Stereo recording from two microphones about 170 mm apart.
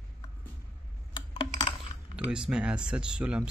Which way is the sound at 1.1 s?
30° left (ahead or behind).